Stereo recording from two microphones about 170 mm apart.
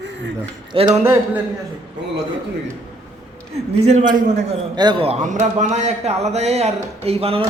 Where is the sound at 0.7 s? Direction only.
35° right (ahead or behind).